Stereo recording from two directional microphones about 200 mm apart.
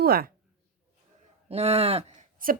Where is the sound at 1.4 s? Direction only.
30° right (ahead or behind).